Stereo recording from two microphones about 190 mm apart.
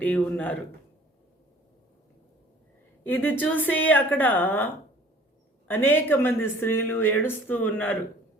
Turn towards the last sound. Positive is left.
turn(degrees=10)  # may be behind; listen again after turning